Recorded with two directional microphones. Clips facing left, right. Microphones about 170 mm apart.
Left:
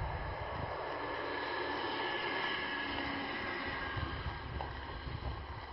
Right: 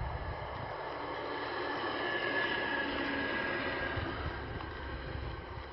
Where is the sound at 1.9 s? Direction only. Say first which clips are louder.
Right 3 dB; 55° right (ahead or behind).